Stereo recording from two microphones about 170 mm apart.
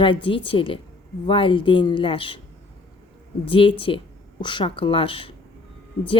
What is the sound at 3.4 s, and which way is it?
A woman's voice, 30° left (ahead or behind).